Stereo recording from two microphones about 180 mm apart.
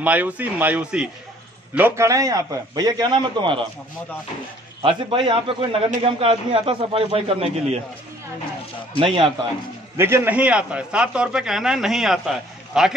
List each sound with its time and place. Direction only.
0.0 s a man's voice: 10° right (ahead or behind); by 3.6 s 25° right (ahead or behind)
4.8 s a man's voice: 30° right (ahead or behind)
9.0 s a man's voice: 30° right (ahead or behind)
9.9 s a man's voice: 15° right (ahead or behind)